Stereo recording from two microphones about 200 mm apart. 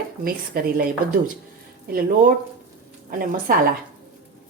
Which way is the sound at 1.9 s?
45° right (ahead or behind).